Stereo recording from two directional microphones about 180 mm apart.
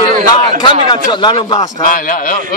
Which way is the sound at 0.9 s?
25° left (ahead or behind).